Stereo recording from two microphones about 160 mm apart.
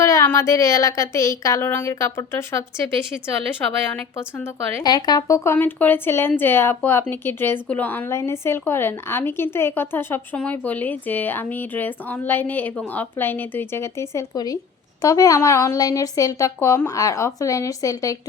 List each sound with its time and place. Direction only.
0.0 s a woman's voice: 20° left (ahead or behind)
3.9 s a woman's voice: 10° left (ahead or behind)
4.8 s a woman's voice: 25° left (ahead or behind)